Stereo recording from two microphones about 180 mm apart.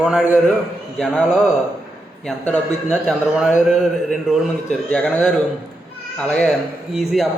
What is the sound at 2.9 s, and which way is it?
A man's voice, 5° right (ahead or behind).